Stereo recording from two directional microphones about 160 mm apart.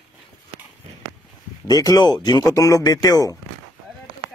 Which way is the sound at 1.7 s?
25° left (ahead or behind).